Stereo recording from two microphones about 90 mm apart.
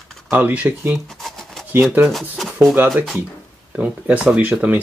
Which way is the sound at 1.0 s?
5° left (ahead or behind).